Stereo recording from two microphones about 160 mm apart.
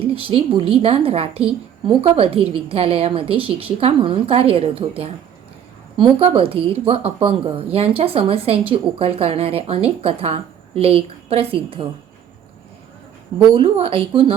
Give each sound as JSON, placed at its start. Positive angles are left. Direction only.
{"t": 0.0, "sound": "a woman's voice", "side_deg": -35}
{"t": 13.5, "sound": "a woman's voice", "side_deg": -35}